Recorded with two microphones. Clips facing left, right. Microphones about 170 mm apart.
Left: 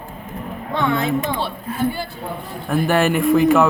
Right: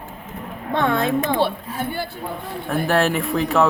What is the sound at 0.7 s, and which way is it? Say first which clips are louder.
A woman's voice: even; 50° right (ahead or behind).